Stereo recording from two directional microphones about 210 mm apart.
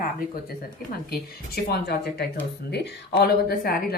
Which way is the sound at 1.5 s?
50° left (ahead or behind).